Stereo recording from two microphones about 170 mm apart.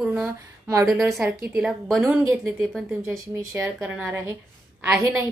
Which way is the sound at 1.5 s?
5° right (ahead or behind).